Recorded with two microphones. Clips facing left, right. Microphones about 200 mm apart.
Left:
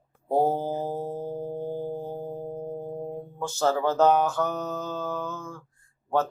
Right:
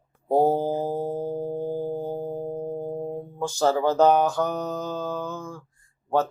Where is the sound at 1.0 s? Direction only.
35° right (ahead or behind).